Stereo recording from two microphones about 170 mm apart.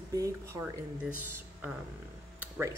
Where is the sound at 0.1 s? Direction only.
20° right (ahead or behind).